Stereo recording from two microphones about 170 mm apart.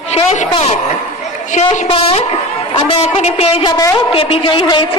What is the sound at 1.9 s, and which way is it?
A woman's voice, 35° left (ahead or behind).